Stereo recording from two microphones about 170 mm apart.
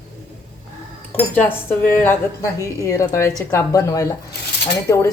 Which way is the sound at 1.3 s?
15° left (ahead or behind).